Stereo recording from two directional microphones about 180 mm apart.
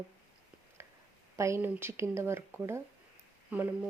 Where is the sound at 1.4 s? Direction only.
15° right (ahead or behind).